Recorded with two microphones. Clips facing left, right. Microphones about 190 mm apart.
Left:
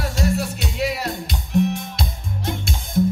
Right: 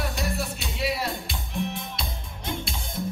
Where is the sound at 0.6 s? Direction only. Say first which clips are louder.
Left 4 dB; 45° left (ahead or behind).